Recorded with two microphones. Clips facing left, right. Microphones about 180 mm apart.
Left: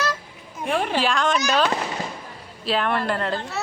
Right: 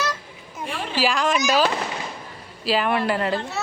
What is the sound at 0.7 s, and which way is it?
Speech, 55° left (ahead or behind).